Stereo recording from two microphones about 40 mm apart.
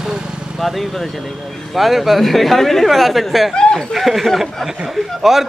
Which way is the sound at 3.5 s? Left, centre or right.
Centre.